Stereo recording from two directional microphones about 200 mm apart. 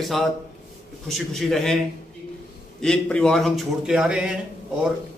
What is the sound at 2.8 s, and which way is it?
A man's voice, 5° left (ahead or behind).